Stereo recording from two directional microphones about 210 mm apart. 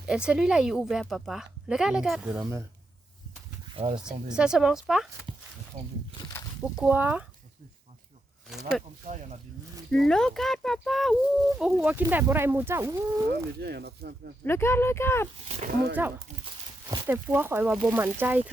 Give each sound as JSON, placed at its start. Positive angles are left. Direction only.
{"t": 0.0, "sound": "speech", "side_deg": -5}
{"t": 3.8, "sound": "speech", "side_deg": -30}
{"t": 4.4, "sound": "speech", "side_deg": -5}
{"t": 5.7, "sound": "speech", "side_deg": -35}
{"t": 6.6, "sound": "speech", "side_deg": -5}
{"t": 9.0, "sound": "speech", "side_deg": -35}
{"t": 9.9, "sound": "speech", "side_deg": 5}
{"t": 13.3, "sound": "speech", "side_deg": -50}
{"t": 14.4, "sound": "speech", "side_deg": 10}
{"t": 16.0, "sound": "speech", "side_deg": -10}